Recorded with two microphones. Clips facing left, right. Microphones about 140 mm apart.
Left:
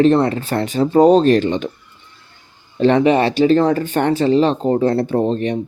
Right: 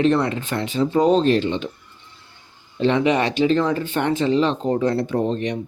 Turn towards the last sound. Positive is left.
turn(degrees=35)  # may be behind; listen again after turning